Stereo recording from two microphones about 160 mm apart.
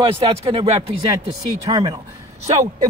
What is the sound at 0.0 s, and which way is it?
Speech, 35° right (ahead or behind).